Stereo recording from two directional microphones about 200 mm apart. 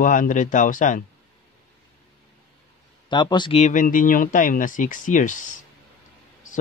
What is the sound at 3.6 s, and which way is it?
Speech, 40° left (ahead or behind).